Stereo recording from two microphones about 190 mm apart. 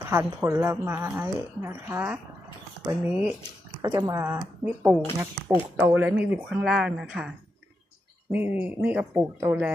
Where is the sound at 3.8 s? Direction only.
20° right (ahead or behind).